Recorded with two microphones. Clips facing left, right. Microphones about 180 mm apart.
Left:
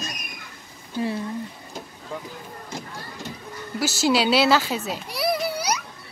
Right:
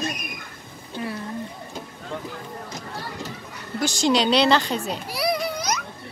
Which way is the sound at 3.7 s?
5° left (ahead or behind).